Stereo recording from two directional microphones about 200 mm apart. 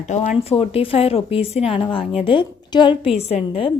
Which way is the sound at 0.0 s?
35° left (ahead or behind).